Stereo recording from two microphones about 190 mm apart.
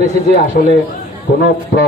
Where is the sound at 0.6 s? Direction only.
45° left (ahead or behind).